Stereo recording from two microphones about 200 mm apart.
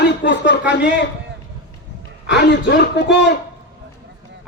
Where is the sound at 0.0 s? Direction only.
60° left (ahead or behind).